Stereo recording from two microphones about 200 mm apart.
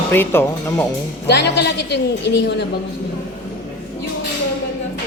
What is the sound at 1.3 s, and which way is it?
A woman's voice, 55° left (ahead or behind).